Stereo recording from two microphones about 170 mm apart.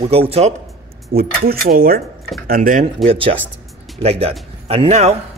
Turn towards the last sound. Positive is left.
turn(degrees=-40)  # may be behind; listen again after turning